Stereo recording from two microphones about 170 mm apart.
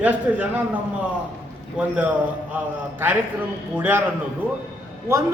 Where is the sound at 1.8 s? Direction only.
10° right (ahead or behind).